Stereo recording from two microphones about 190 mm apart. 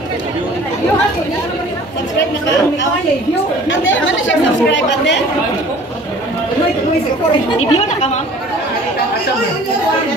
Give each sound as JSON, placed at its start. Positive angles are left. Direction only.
{"t": 3.6, "sound": "speech", "side_deg": 80}
{"t": 7.5, "sound": "speech", "side_deg": 30}